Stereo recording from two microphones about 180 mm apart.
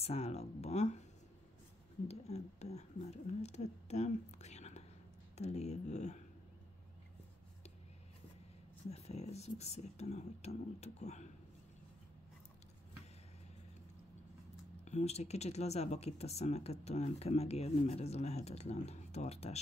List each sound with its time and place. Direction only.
0.0 s speech: 35° left (ahead or behind)
2.0 s speech: 35° left (ahead or behind)
8.9 s speech: 35° left (ahead or behind)
14.9 s speech: 40° left (ahead or behind)